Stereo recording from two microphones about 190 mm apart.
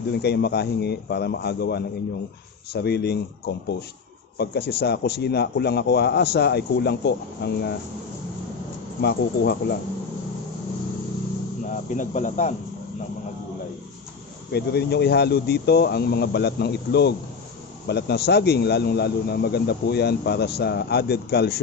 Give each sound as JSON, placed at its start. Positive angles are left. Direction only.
{"t": 0.1, "sound": "a man's voice", "side_deg": 60}
{"t": 9.0, "sound": "a man's voice", "side_deg": 60}
{"t": 11.6, "sound": "speech", "side_deg": 40}
{"t": 14.5, "sound": "a man's voice", "side_deg": 60}